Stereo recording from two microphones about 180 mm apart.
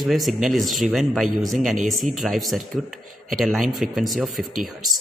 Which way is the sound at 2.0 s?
Centre (ahead or behind).